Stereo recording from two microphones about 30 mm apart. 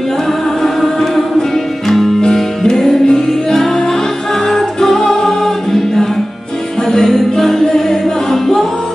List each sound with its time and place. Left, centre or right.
0.6 s music: centre
2.9 s music: left
3.3 s music: centre
7.3 s music: centre